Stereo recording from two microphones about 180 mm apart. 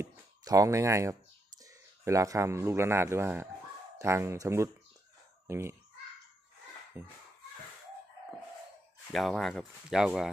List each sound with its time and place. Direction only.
0.0 s a sound: 15° right (ahead or behind)
1.6 s speech: 20° right (ahead or behind)
7.0 s speech: 10° right (ahead or behind)
9.1 s speech: centre (ahead or behind)